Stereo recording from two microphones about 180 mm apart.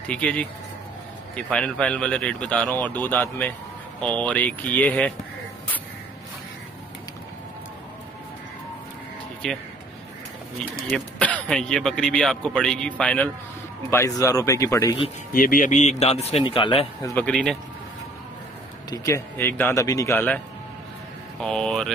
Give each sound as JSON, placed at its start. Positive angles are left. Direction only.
{"t": 0.0, "sound": "speech", "side_deg": 5}
{"t": 9.4, "sound": "speech", "side_deg": 5}
{"t": 10.9, "sound": "speech", "side_deg": 10}
{"t": 15.3, "sound": "speech", "side_deg": 50}
{"t": 17.0, "sound": "speech", "side_deg": 10}
{"t": 18.9, "sound": "speech", "side_deg": 15}
{"t": 21.4, "sound": "speech", "side_deg": 5}